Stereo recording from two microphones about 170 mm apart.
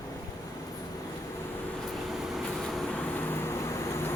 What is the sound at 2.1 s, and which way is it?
Vehicle, centre (ahead or behind).